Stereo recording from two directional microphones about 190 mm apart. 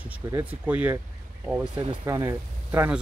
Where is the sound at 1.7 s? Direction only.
25° right (ahead or behind).